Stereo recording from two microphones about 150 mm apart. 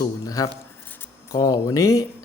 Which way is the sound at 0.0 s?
25° left (ahead or behind).